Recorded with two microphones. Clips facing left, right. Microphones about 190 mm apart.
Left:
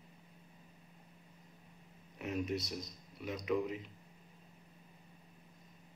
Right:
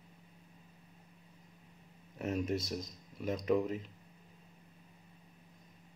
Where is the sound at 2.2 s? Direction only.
40° right (ahead or behind).